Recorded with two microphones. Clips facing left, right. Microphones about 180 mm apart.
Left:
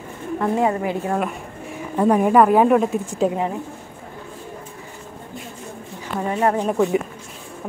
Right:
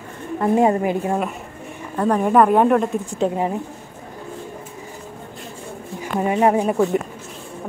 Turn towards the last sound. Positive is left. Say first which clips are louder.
# right 1 dB
turn(degrees=0)  # may be behind; listen again after turning